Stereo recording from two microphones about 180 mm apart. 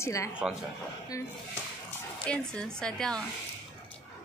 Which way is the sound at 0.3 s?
5° right (ahead or behind).